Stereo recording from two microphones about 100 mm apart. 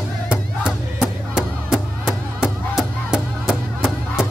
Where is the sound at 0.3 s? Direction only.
5° right (ahead or behind).